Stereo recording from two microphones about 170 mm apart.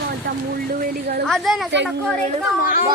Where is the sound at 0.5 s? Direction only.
55° right (ahead or behind).